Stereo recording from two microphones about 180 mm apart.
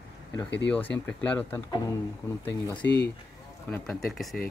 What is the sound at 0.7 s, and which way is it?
Speech, 10° left (ahead or behind).